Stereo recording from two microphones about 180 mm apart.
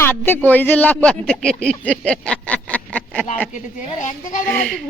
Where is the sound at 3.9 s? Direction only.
45° left (ahead or behind).